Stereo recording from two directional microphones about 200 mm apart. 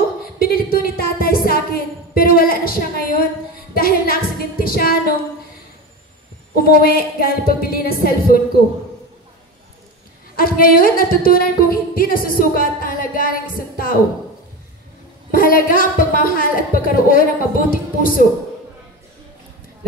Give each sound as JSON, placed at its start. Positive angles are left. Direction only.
{"t": 0.2, "sound": "a sound", "side_deg": 45}
{"t": 3.7, "sound": "female singing", "side_deg": 45}
{"t": 6.5, "sound": "music", "side_deg": 50}
{"t": 10.3, "sound": "music", "side_deg": 45}
{"t": 15.3, "sound": "music", "side_deg": 45}